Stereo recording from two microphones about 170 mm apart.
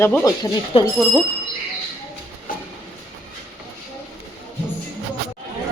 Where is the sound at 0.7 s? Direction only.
35° left (ahead or behind).